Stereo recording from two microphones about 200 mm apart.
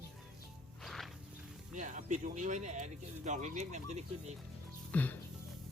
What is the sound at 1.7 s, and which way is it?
Speech, 40° right (ahead or behind).